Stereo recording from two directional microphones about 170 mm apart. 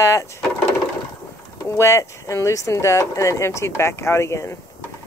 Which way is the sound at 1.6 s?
15° left (ahead or behind).